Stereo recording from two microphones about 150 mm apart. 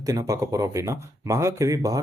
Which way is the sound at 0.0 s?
20° right (ahead or behind).